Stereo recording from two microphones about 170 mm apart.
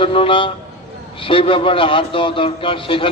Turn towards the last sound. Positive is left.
turn(degrees=30)  # may be behind; listen again after turning